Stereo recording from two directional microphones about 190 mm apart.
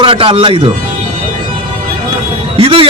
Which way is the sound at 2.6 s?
30° right (ahead or behind).